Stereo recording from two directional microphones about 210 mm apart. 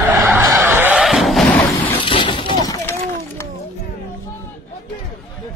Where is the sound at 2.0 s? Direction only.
25° left (ahead or behind).